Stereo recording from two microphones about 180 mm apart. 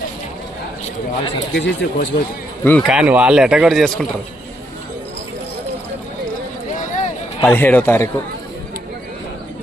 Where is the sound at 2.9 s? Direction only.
5° right (ahead or behind).